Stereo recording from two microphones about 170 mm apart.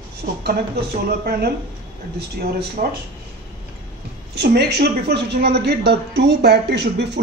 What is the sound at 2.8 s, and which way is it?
Speech, 60° right (ahead or behind).